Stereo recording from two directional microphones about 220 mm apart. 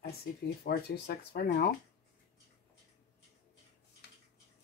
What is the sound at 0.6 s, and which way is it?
Speech, 45° left (ahead or behind).